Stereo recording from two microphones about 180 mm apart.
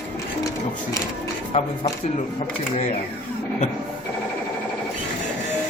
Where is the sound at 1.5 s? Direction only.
40° left (ahead or behind).